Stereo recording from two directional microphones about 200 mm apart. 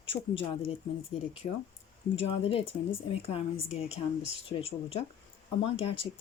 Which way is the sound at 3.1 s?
30° left (ahead or behind).